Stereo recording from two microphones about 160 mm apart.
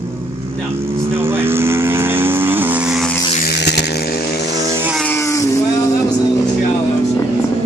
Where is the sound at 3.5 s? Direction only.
90° left.